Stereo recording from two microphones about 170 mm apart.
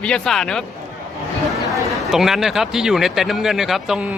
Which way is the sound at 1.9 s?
Centre (ahead or behind).